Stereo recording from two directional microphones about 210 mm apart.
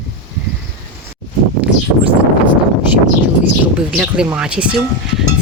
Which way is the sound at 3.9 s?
5° right (ahead or behind).